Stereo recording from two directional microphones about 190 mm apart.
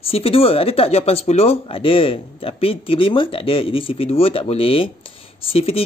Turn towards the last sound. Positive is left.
turn(degrees=30)  # may be behind; listen again after turning